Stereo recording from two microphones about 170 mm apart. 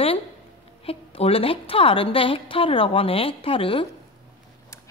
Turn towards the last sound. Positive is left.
turn(degrees=30)  # may be behind; listen again after turning